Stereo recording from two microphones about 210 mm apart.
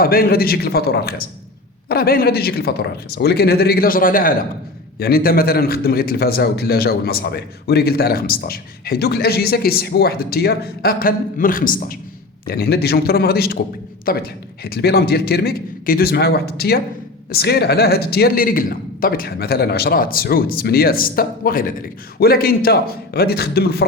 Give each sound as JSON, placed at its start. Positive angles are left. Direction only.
{"t": 0.0, "sound": "a man's voice", "side_deg": 45}